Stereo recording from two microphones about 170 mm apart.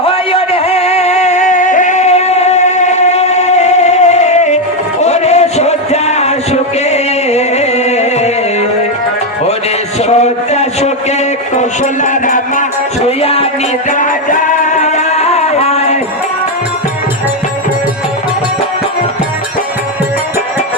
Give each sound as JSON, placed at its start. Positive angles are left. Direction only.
{"t": 0.0, "sound": "a sound", "side_deg": 30}
{"t": 5.0, "sound": "music", "side_deg": 40}
{"t": 10.0, "sound": "a sound", "side_deg": 40}
{"t": 11.5, "sound": "music", "side_deg": 45}
{"t": 13.1, "sound": "music", "side_deg": 35}
{"t": 13.9, "sound": "music", "side_deg": 50}